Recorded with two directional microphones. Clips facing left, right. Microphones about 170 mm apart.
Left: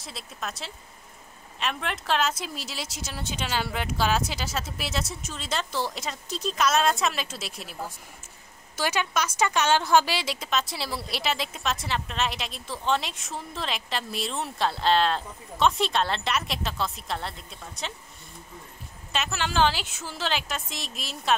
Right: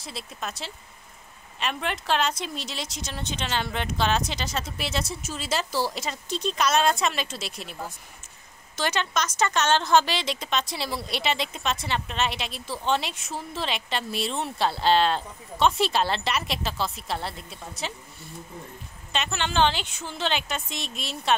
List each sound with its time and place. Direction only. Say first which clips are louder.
0.0 s a woman's voice: right 1 dB; centre (ahead or behind)
8.7 s a woman's voice: even; 10° left (ahead or behind)
19.1 s a woman's voice: right 1 dB; 5° left (ahead or behind)